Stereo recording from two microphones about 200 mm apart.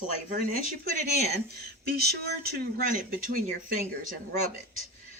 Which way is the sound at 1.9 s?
50° right (ahead or behind).